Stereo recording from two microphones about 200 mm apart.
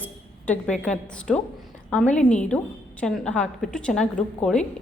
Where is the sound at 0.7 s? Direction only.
5° left (ahead or behind).